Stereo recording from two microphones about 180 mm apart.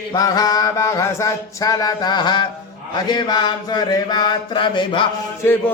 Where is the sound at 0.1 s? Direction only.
20° left (ahead or behind).